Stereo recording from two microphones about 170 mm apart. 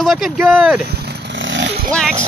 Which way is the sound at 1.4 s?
90° right.